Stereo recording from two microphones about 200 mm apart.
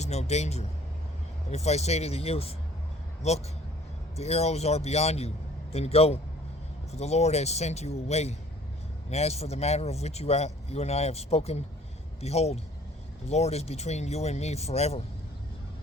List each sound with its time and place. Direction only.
0.0 s speech: 35° left (ahead or behind)